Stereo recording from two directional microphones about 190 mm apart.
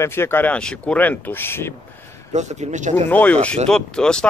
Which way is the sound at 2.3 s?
35° right (ahead or behind).